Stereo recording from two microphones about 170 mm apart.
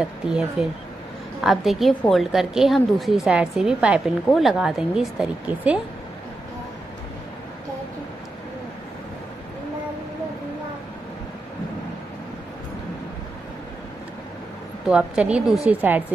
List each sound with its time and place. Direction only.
0.0 s a woman's voice: 5° right (ahead or behind)
14.9 s a woman's voice: 5° right (ahead or behind)